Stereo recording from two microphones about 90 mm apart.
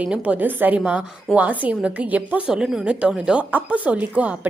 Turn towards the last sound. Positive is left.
turn(degrees=-15)  # may be behind; listen again after turning